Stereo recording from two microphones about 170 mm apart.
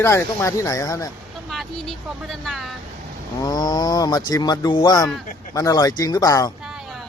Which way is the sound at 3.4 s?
25° left (ahead or behind).